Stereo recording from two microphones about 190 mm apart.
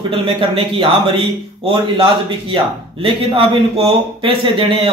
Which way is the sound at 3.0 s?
30° right (ahead or behind).